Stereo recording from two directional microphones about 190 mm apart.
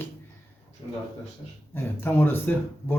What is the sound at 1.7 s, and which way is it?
Speech, 10° left (ahead or behind).